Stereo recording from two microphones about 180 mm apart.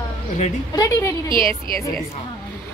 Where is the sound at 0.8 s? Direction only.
15° left (ahead or behind).